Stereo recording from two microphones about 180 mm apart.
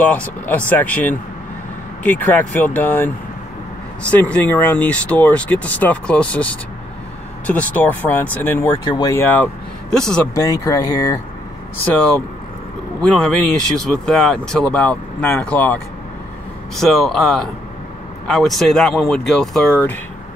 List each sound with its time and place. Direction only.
0.0 s speech: 10° left (ahead or behind)
4.1 s speech: 10° left (ahead or behind)
8.8 s speech: 20° left (ahead or behind); by 10.3 s 5° left (ahead or behind)
10.3 s speech: 20° left (ahead or behind)
11.9 s speech: 5° left (ahead or behind)